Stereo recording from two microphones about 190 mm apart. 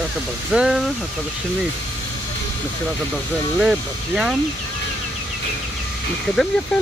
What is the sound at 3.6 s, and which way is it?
Speech, 5° right (ahead or behind).